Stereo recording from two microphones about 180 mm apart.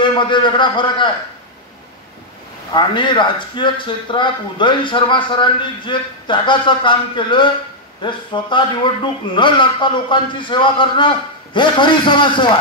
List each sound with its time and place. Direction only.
0.0 s a man's voice: 25° left (ahead or behind)
2.7 s a man's voice: 25° left (ahead or behind)